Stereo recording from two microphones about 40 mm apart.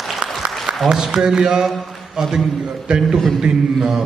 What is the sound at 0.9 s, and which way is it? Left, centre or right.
Speech, centre.